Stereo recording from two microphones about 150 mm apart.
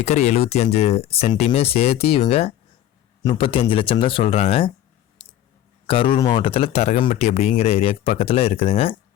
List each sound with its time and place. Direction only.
0.0 s speech: 45° left (ahead or behind)
5.8 s speech: 35° left (ahead or behind)
6.1 s speech: 25° left (ahead or behind)
6.4 s speech: 40° left (ahead or behind)